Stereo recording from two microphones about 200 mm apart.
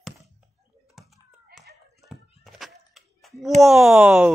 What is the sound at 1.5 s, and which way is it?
Hands, 55° right (ahead or behind).